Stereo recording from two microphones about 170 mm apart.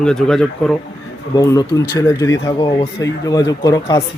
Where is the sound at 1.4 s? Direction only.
20° left (ahead or behind).